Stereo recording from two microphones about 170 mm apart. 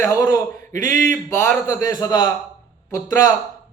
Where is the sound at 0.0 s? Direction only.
15° left (ahead or behind).